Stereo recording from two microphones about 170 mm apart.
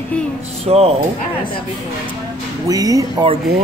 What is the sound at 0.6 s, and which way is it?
Speech, 35° right (ahead or behind).